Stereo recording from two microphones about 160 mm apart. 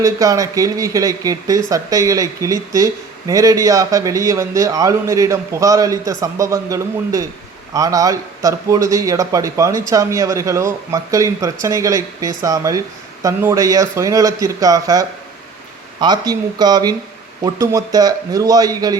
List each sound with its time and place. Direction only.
0.0 s speech: 20° right (ahead or behind)